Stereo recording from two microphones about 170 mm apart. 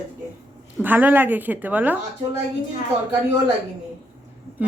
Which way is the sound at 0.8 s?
10° right (ahead or behind).